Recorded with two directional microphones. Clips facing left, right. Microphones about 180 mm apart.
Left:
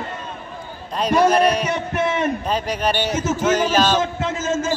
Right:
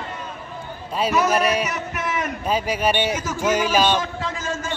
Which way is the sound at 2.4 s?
10° right (ahead or behind).